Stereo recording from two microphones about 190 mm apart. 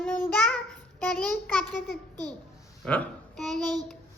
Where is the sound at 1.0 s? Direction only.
5° left (ahead or behind).